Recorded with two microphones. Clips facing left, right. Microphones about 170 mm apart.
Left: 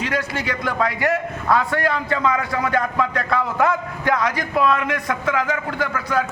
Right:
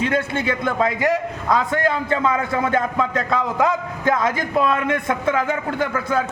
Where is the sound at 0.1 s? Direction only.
25° right (ahead or behind).